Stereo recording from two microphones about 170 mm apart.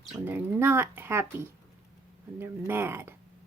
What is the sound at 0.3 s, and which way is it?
Speech, 15° right (ahead or behind).